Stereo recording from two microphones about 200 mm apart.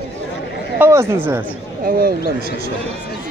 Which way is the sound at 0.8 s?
15° right (ahead or behind).